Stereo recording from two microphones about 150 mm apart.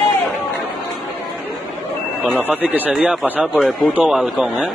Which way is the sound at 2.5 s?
10° right (ahead or behind).